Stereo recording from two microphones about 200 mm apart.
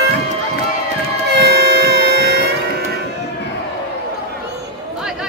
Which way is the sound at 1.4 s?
55° right (ahead or behind).